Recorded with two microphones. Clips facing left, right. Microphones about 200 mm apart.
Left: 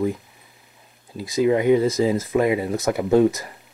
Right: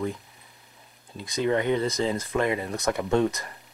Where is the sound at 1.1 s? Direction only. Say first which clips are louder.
Left 6 dB; 5° left (ahead or behind).